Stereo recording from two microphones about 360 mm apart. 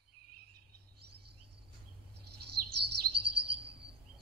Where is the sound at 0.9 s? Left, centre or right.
Right.